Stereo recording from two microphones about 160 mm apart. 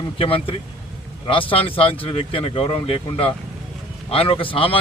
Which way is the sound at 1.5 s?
35° left (ahead or behind).